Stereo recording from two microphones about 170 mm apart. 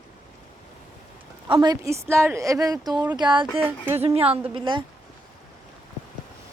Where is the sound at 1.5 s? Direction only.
25° right (ahead or behind).